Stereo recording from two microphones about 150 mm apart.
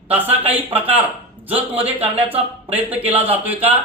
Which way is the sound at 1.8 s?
40° right (ahead or behind).